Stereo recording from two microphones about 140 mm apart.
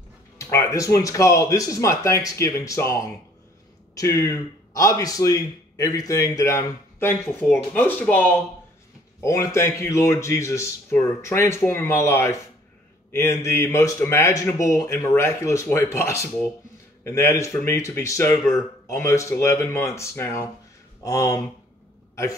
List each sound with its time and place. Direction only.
0.4 s a man's voice: 20° left (ahead or behind)